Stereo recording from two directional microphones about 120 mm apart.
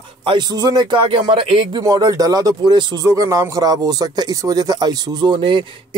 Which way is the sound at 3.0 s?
25° right (ahead or behind).